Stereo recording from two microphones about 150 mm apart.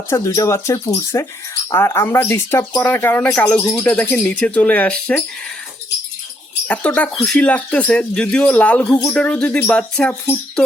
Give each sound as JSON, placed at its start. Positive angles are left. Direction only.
{"t": 0.1, "sound": "speech", "side_deg": 20}
{"t": 6.7, "sound": "speech", "side_deg": 10}